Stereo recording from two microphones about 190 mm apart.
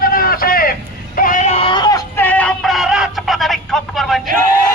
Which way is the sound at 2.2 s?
5° left (ahead or behind).